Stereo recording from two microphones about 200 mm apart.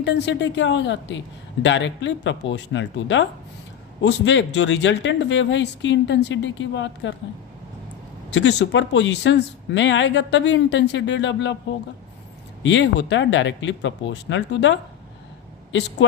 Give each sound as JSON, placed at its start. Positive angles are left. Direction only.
{"t": 0.0, "sound": "speech", "side_deg": 60}
{"t": 8.3, "sound": "speech", "side_deg": 60}
{"t": 12.6, "sound": "speech", "side_deg": 65}